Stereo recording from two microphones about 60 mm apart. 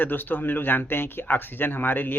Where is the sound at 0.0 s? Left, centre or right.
Left.